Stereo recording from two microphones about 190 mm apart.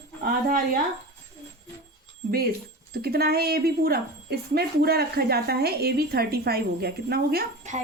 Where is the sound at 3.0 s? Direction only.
55° right (ahead or behind).